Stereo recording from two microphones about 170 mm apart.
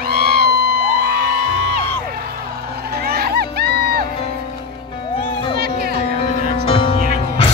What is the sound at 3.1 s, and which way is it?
Music, 65° right (ahead or behind).